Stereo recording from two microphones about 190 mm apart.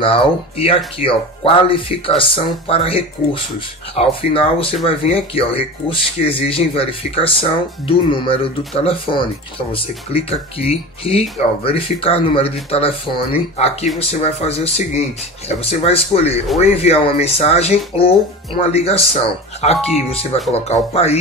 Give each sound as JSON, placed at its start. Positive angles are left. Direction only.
{"t": 0.0, "sound": "speech", "side_deg": 30}